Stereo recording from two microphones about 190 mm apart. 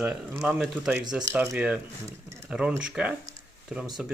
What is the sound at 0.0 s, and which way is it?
Speech, 5° right (ahead or behind).